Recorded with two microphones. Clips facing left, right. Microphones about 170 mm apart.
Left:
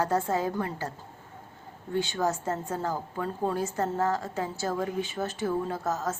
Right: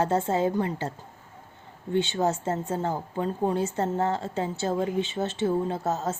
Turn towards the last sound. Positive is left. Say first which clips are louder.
# right 2 dB
turn(degrees=-25)  # may be behind; listen again after turning